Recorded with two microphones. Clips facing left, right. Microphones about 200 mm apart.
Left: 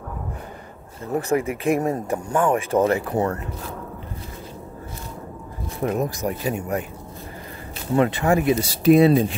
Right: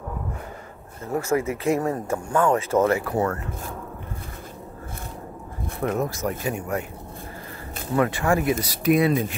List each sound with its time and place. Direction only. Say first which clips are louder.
1.1 s speech: left 1 dB; 15° left (ahead or behind)
5.8 s speech: left 1 dB; 20° left (ahead or behind)
7.9 s speech: left 3 dB; 20° left (ahead or behind)